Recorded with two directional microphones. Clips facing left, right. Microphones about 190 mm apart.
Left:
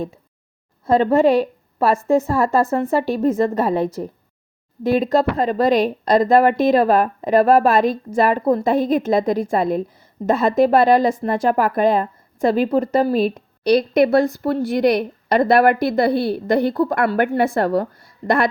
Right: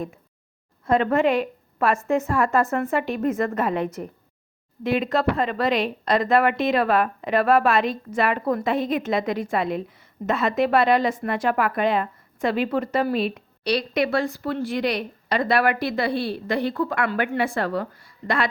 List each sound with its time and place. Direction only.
0.9 s speech: 30° left (ahead or behind)